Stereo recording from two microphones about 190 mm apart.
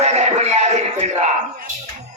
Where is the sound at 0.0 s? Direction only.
35° right (ahead or behind).